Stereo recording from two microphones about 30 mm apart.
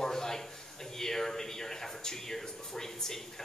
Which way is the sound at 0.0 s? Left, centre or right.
Centre.